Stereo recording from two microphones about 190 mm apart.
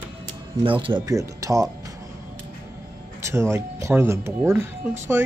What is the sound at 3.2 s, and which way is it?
Speech, 15° right (ahead or behind).